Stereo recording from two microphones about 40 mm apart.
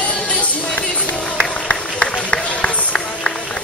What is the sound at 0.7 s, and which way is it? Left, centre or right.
Run, left.